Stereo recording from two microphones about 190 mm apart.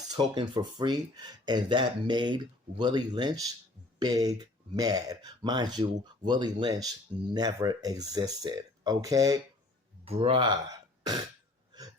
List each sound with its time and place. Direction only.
0.2 s speech: 25° right (ahead or behind)
10.0 s speech: 30° right (ahead or behind)